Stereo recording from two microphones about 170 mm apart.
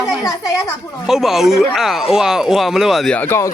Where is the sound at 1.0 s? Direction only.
Centre (ahead or behind).